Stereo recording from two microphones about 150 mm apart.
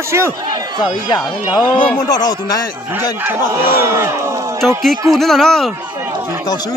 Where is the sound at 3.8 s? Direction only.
15° right (ahead or behind).